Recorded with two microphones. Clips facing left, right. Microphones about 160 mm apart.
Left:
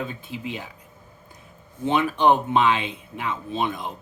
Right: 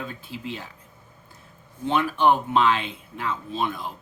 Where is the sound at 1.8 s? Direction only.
20° left (ahead or behind).